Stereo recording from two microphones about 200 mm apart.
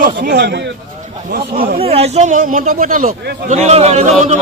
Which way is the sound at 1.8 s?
30° right (ahead or behind).